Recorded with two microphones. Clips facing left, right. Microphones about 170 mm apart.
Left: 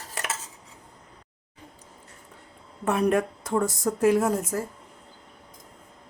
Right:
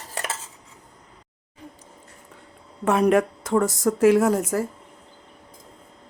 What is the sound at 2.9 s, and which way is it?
Speech, 90° right.